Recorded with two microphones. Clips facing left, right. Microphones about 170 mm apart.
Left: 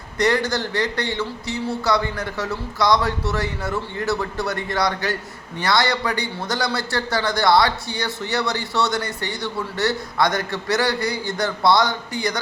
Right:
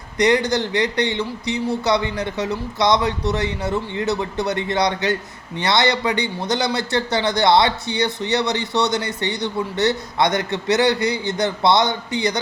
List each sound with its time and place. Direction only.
0.2 s a man's voice: 20° right (ahead or behind)